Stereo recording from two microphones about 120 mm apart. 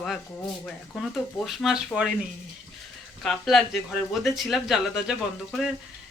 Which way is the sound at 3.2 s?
Centre (ahead or behind).